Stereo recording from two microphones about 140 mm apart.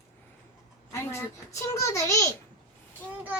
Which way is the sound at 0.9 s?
20° left (ahead or behind).